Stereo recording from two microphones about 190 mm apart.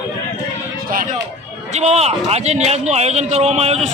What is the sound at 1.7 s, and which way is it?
A man's voice, 35° right (ahead or behind).